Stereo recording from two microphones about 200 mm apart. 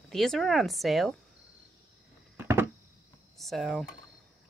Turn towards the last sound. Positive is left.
turn(degrees=0)  # may be behind; listen again after turning